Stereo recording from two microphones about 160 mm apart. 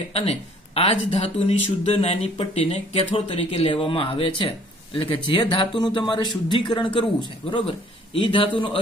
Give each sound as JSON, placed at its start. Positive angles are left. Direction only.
{"t": 0.1, "sound": "speech", "side_deg": 40}